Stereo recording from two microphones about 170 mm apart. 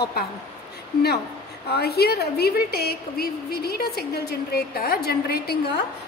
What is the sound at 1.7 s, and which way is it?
A woman's voice, 70° left (ahead or behind).